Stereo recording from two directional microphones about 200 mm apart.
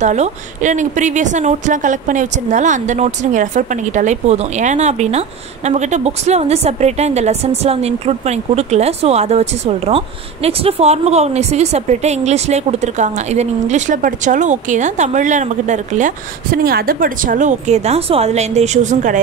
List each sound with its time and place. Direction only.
0.0 s speech: 35° right (ahead or behind)